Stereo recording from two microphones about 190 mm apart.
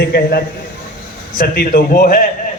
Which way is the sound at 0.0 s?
55° left (ahead or behind).